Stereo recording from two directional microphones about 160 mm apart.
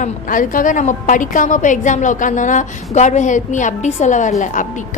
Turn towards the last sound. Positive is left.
turn(degrees=50)  # may be behind; listen again after turning